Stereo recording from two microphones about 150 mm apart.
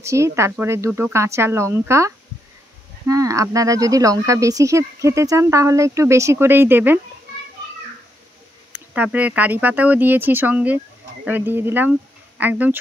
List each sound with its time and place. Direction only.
0.0 s speech: 20° right (ahead or behind)
8.7 s speech: 10° right (ahead or behind)
11.9 s a sound: 10° right (ahead or behind)